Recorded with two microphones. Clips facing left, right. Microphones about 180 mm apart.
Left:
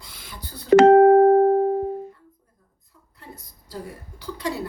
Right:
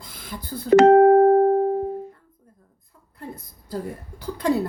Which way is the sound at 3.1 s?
50° right (ahead or behind).